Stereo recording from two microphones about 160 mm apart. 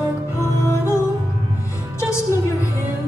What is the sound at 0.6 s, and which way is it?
Music, 15° left (ahead or behind).